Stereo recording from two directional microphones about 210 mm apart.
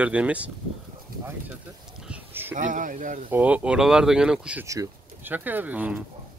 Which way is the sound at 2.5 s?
35° right (ahead or behind).